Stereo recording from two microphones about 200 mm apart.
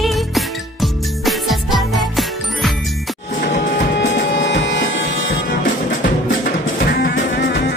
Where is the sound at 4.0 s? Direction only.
65° left (ahead or behind).